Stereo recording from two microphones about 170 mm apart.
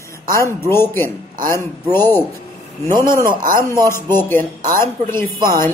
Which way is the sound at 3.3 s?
55° right (ahead or behind).